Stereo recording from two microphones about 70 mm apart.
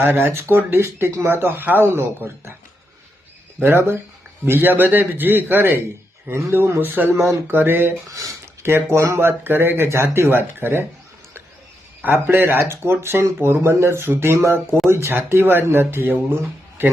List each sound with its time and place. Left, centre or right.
0.0 s speech: right
3.6 s a man's voice: right
12.0 s speech: right